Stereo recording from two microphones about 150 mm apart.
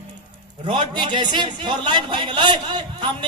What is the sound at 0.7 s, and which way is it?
A man's voice, 30° right (ahead or behind).